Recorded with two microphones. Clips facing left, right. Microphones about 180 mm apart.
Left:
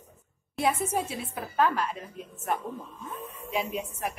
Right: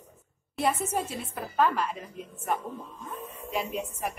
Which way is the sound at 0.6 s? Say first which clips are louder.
Left 1 dB; 10° left (ahead or behind).